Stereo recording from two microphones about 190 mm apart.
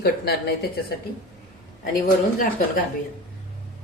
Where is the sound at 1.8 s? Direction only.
45° left (ahead or behind).